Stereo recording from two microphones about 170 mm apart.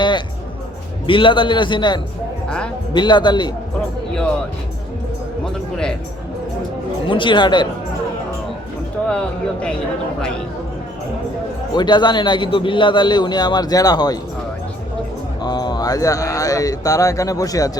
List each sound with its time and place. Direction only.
1.0 s a man's voice: 30° left (ahead or behind)
7.1 s a man's voice: 30° left (ahead or behind)
9.0 s a man's voice: 5° left (ahead or behind)
11.7 s a man's voice: 25° left (ahead or behind)
15.4 s a man's voice: 25° left (ahead or behind)